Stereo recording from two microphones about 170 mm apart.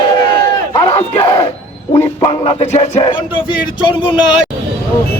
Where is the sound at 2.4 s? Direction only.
35° left (ahead or behind).